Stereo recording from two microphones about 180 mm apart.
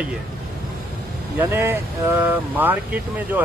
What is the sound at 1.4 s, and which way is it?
Speech, 10° right (ahead or behind).